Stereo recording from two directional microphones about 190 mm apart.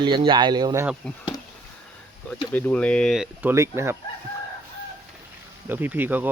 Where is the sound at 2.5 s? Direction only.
10° left (ahead or behind).